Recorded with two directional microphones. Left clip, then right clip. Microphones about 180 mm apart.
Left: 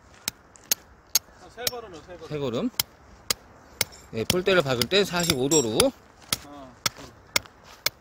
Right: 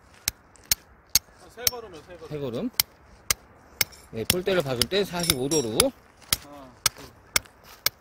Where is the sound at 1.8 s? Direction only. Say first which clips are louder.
Left 1 dB; 35° right (ahead or behind).